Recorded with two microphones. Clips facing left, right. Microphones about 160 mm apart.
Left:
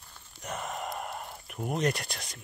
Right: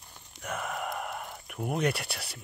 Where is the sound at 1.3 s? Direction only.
Centre (ahead or behind).